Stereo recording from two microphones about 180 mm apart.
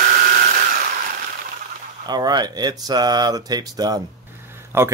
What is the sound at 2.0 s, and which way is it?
Speech, 20° right (ahead or behind).